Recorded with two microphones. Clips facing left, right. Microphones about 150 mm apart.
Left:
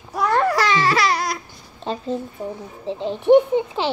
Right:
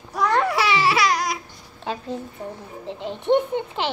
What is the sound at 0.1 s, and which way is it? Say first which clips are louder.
Babbling: left 2 dB; 5° left (ahead or behind).